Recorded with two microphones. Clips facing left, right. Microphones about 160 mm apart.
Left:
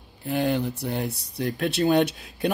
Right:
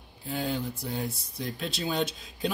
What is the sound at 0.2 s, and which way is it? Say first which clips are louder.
Speech: left 7 dB; 65° left (ahead or behind).